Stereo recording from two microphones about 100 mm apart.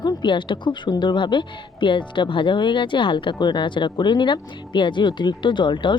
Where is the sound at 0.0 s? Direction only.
50° left (ahead or behind).